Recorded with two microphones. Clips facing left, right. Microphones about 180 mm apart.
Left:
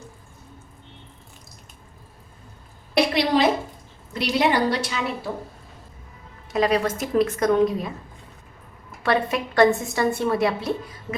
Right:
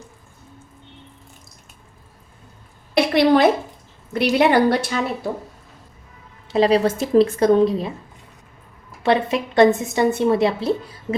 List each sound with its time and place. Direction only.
3.2 s a woman's voice: 55° right (ahead or behind)
6.5 s a woman's voice: 30° right (ahead or behind)
9.0 s a woman's voice: 20° right (ahead or behind)